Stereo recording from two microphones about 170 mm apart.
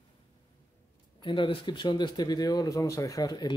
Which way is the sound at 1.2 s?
30° left (ahead or behind).